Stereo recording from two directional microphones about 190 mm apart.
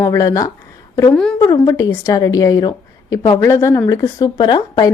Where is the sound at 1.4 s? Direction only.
20° left (ahead or behind).